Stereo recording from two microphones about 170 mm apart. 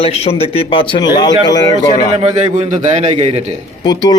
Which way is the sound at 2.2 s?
45° right (ahead or behind).